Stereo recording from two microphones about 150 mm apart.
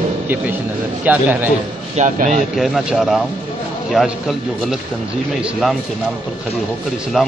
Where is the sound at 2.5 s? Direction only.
Centre (ahead or behind).